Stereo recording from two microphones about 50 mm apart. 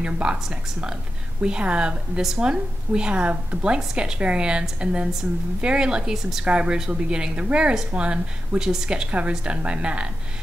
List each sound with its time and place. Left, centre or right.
0.0 s a woman's voice: centre
6.4 s a woman's voice: right